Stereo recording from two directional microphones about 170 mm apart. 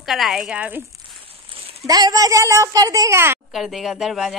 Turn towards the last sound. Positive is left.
turn(degrees=0)  # may be behind; listen again after turning